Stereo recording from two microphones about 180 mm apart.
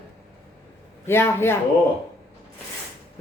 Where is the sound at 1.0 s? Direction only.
15° left (ahead or behind).